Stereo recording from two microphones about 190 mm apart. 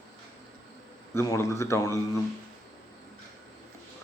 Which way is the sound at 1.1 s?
15° left (ahead or behind).